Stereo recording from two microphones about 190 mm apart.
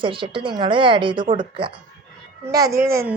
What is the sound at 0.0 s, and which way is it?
A woman's voice, 25° right (ahead or behind).